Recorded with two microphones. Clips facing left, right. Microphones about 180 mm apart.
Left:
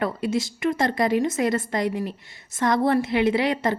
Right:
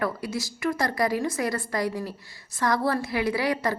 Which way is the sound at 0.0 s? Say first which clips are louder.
Left 4 dB; 25° left (ahead or behind).